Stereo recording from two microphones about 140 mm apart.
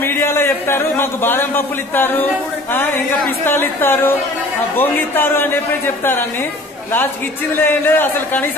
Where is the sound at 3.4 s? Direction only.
15° left (ahead or behind).